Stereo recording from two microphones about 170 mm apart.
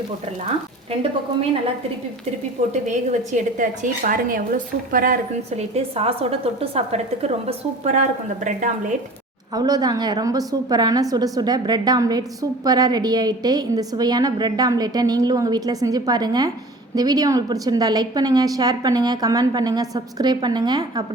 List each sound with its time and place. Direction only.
2.8 s a woman's voice: 45° right (ahead or behind)
5.5 s a woman's voice: 35° right (ahead or behind)
9.6 s a woman's voice: 20° right (ahead or behind)